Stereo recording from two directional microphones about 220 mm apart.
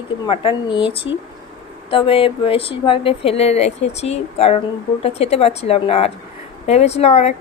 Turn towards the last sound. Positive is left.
turn(degrees=30)  # may be behind; listen again after turning